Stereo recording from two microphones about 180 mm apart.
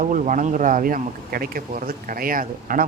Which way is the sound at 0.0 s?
45° right (ahead or behind).